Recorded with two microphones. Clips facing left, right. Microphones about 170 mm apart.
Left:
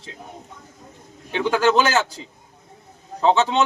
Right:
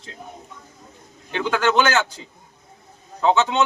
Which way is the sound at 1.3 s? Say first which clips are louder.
Left 2 dB; 30° left (ahead or behind).